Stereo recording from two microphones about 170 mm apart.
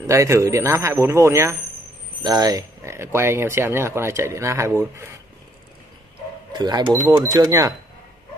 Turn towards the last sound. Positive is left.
turn(degrees=-20)  # may be behind; listen again after turning